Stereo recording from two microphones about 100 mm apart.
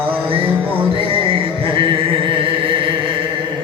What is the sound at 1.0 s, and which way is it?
Music, 70° right (ahead or behind).